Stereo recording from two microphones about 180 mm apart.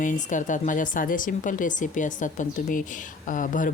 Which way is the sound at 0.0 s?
45° left (ahead or behind).